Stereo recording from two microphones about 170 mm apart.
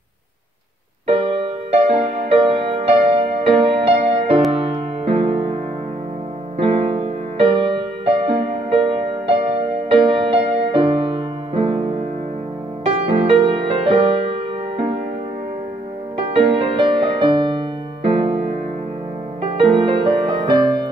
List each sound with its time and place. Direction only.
1.0 s music: 35° right (ahead or behind)
6.6 s music: 35° right (ahead or behind)
16.3 s music: 35° right (ahead or behind)